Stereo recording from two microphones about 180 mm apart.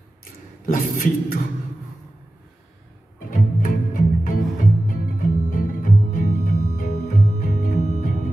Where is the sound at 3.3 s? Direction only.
50° left (ahead or behind).